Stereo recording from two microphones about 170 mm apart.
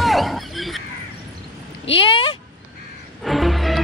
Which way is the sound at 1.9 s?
35° left (ahead or behind).